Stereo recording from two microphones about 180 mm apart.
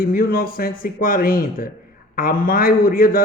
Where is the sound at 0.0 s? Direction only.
55° left (ahead or behind).